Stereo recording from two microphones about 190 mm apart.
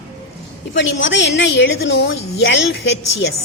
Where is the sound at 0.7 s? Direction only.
75° left (ahead or behind).